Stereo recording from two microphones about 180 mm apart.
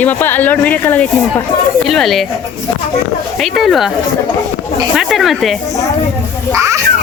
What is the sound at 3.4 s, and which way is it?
Speech, centre (ahead or behind).